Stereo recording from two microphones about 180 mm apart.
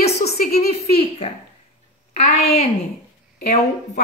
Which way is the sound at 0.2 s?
60° left (ahead or behind).